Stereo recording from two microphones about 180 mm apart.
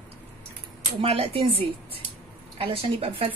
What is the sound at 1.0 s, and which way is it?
Speech, 35° right (ahead or behind).